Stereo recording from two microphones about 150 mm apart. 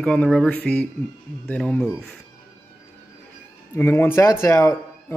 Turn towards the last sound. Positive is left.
turn(degrees=15)  # may be behind; listen again after turning